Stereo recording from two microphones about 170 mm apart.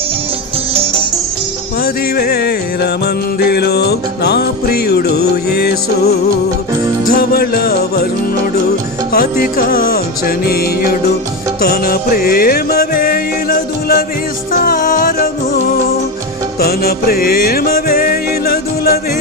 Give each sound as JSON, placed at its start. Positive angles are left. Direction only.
{"t": 1.8, "sound": "music", "side_deg": 65}
{"t": 9.1, "sound": "music", "side_deg": 60}
{"t": 16.6, "sound": "music", "side_deg": 65}